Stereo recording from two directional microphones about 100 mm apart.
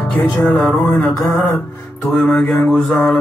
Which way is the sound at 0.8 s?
20° left (ahead or behind).